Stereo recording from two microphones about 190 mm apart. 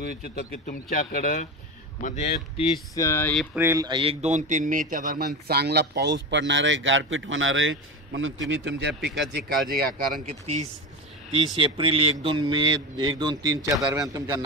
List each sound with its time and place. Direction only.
0.4 s speech: 50° left (ahead or behind); by 2.8 s 30° left (ahead or behind)
2.9 s a sound: 15° left (ahead or behind)
3.5 s a man's voice: 15° right (ahead or behind); by 9.4 s 65° right (ahead or behind)
9.7 s speech: 50° right (ahead or behind)
10.4 s a man's voice: 35° right (ahead or behind); by 14.4 s 20° right (ahead or behind)